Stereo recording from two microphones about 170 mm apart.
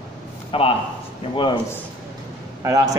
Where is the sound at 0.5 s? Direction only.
35° left (ahead or behind).